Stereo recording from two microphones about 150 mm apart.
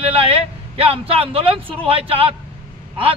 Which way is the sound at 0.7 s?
40° right (ahead or behind).